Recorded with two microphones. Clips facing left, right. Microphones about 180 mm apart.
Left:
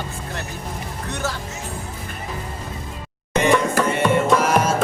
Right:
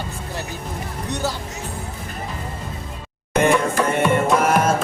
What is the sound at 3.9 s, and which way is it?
Music, 55° right (ahead or behind).